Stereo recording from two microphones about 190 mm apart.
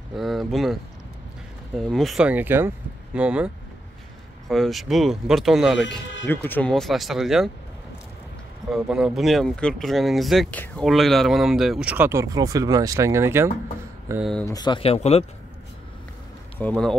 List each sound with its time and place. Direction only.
0.1 s speech: centre (ahead or behind)
1.8 s speech: centre (ahead or behind)
6.2 s speech: 10° left (ahead or behind)
8.7 s speech: 5° right (ahead or behind)
14.5 s speech: 20° left (ahead or behind)
16.5 s speech: 5° left (ahead or behind)